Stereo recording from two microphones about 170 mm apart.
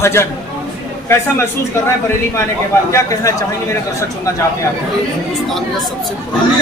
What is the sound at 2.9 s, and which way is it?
Speech, 20° left (ahead or behind).